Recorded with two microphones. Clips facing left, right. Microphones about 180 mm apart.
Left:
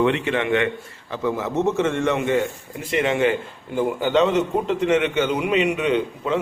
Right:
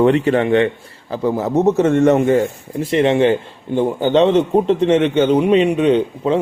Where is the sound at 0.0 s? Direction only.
40° right (ahead or behind).